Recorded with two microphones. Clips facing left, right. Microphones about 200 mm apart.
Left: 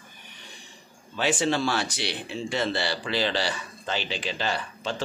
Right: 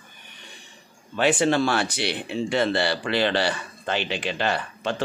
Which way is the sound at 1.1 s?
60° right (ahead or behind).